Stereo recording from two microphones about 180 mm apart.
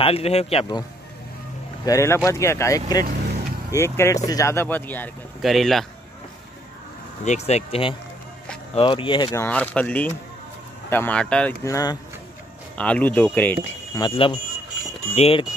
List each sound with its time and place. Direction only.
0.0 s speech: 35° left (ahead or behind)
1.9 s speech: 15° left (ahead or behind)
7.2 s speech: 40° left (ahead or behind); by 11.5 s 5° left (ahead or behind)
11.6 s speech: 20° left (ahead or behind)
12.7 s speech: 5° left (ahead or behind)
13.9 s speech: 25° left (ahead or behind)